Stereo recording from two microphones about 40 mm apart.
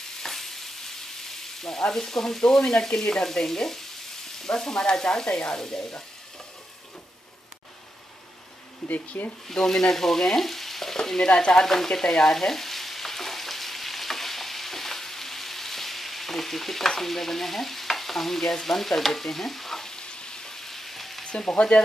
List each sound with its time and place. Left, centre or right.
0.2 s stir: centre
1.8 s frying: centre
2.6 s frying: left
8.8 s speech: left
9.5 s frying: centre
11.0 s stir: centre
11.6 s frying: centre
21.3 s stir: left